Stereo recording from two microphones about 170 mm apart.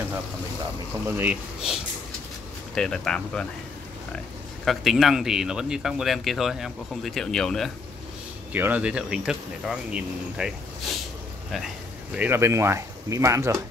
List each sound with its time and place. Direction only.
1.0 s speech: 10° right (ahead or behind)
2.7 s speech: 5° left (ahead or behind)
4.6 s speech: centre (ahead or behind)
8.5 s speech: 10° right (ahead or behind)
12.2 s speech: 15° right (ahead or behind)